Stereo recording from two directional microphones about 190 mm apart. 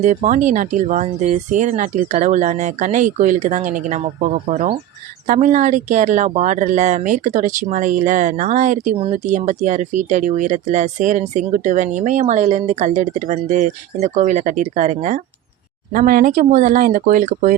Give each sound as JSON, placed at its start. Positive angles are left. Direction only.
{"t": 0.0, "sound": "speech", "side_deg": -40}